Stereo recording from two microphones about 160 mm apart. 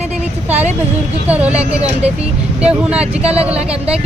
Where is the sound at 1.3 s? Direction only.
10° right (ahead or behind).